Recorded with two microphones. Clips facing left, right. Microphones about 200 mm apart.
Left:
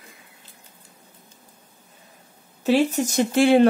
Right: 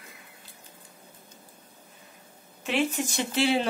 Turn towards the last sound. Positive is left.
turn(degrees=50)  # may be behind; listen again after turning